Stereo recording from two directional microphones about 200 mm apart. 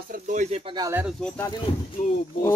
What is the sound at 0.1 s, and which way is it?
Speech, 40° right (ahead or behind).